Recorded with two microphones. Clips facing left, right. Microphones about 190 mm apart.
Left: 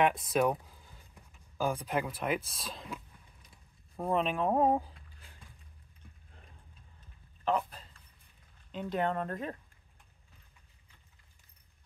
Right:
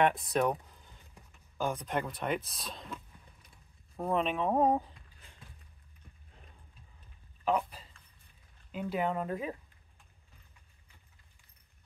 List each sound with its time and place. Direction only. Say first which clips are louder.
0.0 s speech: even; centre (ahead or behind)
6.3 s a sound: right 1 dB; centre (ahead or behind)
7.4 s a man's voice: right 1 dB; 5° right (ahead or behind)